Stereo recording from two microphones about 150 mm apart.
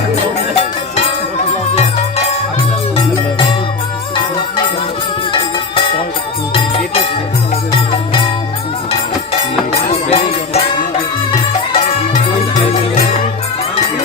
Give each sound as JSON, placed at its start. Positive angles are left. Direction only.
{"t": 1.7, "sound": "music", "side_deg": 50}
{"t": 6.5, "sound": "music", "side_deg": 40}
{"t": 9.7, "sound": "music", "side_deg": 45}